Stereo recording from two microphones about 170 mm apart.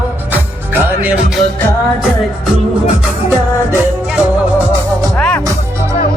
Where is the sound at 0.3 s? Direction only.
10° right (ahead or behind).